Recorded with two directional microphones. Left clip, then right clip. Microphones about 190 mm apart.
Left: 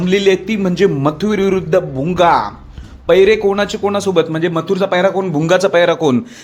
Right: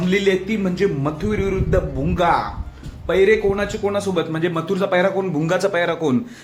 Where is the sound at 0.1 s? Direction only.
40° left (ahead or behind).